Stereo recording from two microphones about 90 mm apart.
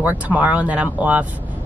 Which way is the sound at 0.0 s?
15° right (ahead or behind).